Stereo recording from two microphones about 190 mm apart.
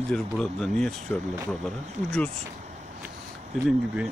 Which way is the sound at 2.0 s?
5° left (ahead or behind).